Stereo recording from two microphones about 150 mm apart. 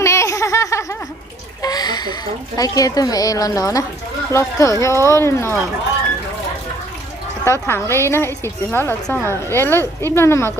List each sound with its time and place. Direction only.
0.0 s laughter: 20° left (ahead or behind)
1.6 s speech: 25° left (ahead or behind)
7.4 s speech: 15° left (ahead or behind)